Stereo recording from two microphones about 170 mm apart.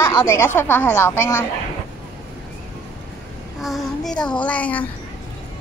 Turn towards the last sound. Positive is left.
turn(degrees=10)  # may be behind; listen again after turning